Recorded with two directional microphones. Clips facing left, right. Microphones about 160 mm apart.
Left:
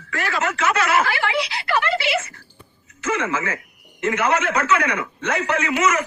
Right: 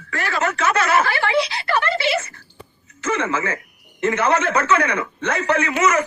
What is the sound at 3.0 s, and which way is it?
A man's voice, 30° right (ahead or behind).